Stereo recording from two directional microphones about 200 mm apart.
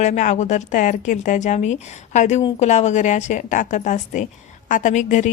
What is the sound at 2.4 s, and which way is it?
Speech, 25° left (ahead or behind).